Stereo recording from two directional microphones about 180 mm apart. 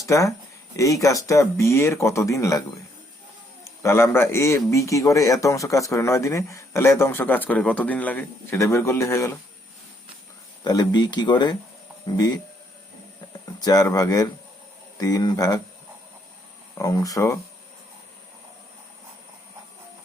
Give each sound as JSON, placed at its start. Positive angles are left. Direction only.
{"t": 0.0, "sound": "a man's voice", "side_deg": 15}
{"t": 10.6, "sound": "speech", "side_deg": 20}
{"t": 13.7, "sound": "speech", "side_deg": 20}
{"t": 16.7, "sound": "a man's voice", "side_deg": 20}